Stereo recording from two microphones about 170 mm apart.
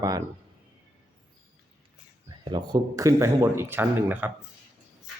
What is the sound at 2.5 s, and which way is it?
Speech, 25° right (ahead or behind).